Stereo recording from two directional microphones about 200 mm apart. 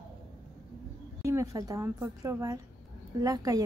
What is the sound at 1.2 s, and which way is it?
A woman's voice, 15° right (ahead or behind).